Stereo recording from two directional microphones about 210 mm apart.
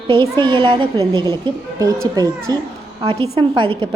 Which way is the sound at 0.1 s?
20° right (ahead or behind).